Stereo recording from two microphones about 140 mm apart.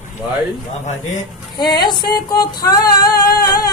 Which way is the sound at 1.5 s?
30° left (ahead or behind).